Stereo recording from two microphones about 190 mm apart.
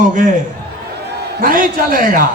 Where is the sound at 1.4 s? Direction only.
45° right (ahead or behind).